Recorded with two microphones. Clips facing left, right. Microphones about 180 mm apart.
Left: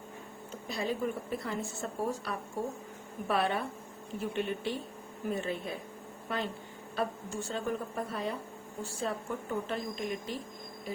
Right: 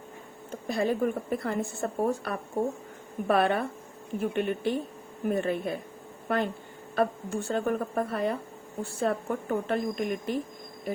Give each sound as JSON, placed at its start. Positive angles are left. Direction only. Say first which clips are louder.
{"t": 0.5, "sound": "a woman's voice", "louder": "right 7 dB", "side_deg": -55}
{"t": 10.9, "sound": "insect", "louder": "right 6 dB", "side_deg": -55}